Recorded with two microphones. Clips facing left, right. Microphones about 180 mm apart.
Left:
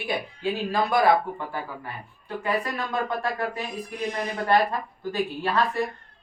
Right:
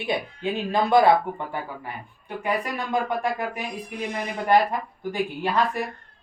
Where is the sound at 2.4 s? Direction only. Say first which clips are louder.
Right 1 dB; 15° right (ahead or behind).